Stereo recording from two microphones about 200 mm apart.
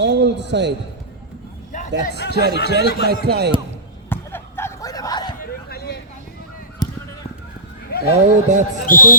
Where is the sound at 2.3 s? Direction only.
55° right (ahead or behind).